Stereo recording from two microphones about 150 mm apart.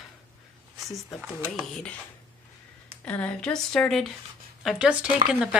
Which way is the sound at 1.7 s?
5° left (ahead or behind).